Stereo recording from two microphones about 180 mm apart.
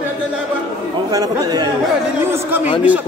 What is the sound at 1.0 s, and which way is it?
Speech, 20° right (ahead or behind).